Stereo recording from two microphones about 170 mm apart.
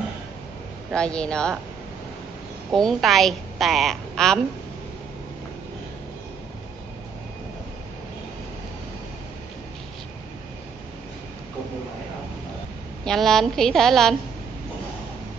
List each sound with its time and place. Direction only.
0.9 s a woman's voice: 5° left (ahead or behind)
2.7 s a woman's voice: centre (ahead or behind)
13.0 s a woman's voice: centre (ahead or behind)